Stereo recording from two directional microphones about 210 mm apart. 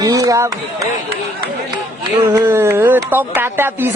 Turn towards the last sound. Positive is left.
turn(degrees=-10)  # may be behind; listen again after turning